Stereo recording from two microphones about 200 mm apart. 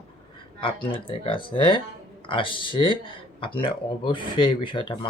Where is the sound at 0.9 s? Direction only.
25° left (ahead or behind).